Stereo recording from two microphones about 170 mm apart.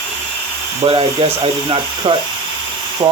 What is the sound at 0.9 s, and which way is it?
Speech, 30° right (ahead or behind).